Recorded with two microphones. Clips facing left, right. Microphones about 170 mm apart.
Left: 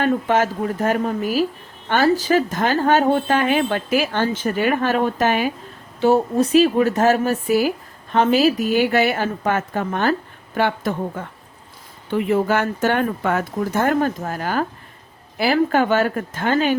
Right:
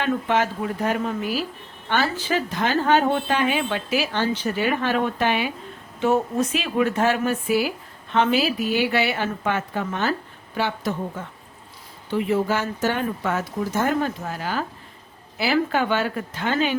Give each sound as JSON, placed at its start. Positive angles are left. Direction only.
{"t": 0.0, "sound": "speech", "side_deg": 45}